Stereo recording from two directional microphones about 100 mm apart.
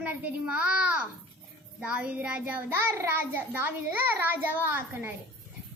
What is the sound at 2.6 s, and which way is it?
A child's voice, 20° right (ahead or behind).